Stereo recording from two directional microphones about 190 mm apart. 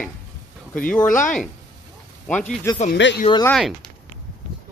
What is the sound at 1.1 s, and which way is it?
Speech, 45° left (ahead or behind).